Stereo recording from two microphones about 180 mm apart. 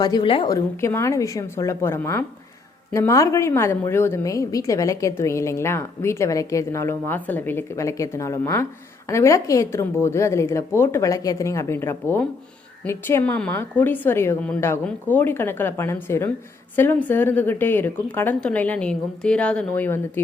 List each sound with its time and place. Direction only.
0.0 s a woman's voice: 25° left (ahead or behind); by 20.0 s 10° left (ahead or behind)